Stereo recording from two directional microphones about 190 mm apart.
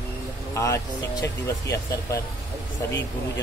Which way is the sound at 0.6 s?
15° left (ahead or behind).